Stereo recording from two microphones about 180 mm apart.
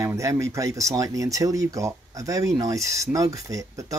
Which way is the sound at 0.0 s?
15° right (ahead or behind).